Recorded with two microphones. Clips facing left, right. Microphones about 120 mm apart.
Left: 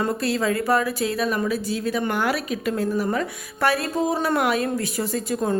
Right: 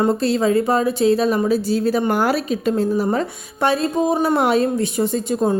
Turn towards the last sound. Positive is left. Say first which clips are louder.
# right 5 dB
turn(degrees=-25)  # may be behind; listen again after turning